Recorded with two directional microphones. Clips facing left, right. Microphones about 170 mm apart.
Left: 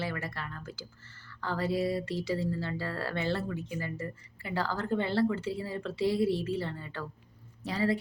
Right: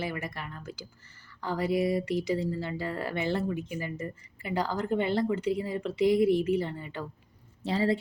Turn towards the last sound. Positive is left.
turn(degrees=-25)  # may be behind; listen again after turning